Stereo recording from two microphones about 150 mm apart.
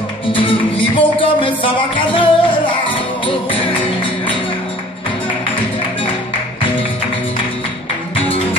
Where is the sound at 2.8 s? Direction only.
35° left (ahead or behind).